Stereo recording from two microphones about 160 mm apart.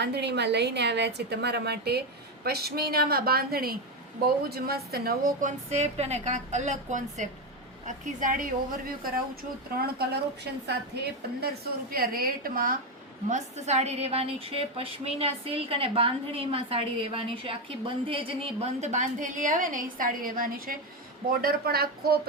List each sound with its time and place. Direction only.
0.0 s a woman's voice: 90° right; by 9.2 s 65° right (ahead or behind)
9.7 s a woman's voice: 80° right
13.3 s a woman's voice: 45° right (ahead or behind); by 22.2 s 75° right (ahead or behind)